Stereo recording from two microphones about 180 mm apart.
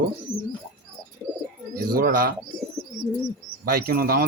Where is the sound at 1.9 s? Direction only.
55° right (ahead or behind).